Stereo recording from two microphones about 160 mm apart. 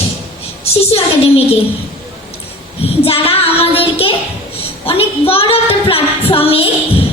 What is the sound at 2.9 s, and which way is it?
Child singing, 35° left (ahead or behind).